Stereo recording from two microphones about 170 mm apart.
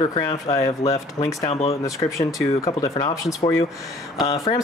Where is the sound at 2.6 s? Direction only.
20° left (ahead or behind).